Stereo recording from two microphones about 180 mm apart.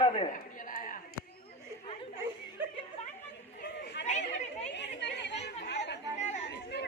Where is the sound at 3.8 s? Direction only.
75° left (ahead or behind).